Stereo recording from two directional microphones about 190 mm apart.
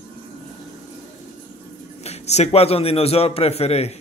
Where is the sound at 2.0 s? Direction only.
35° left (ahead or behind).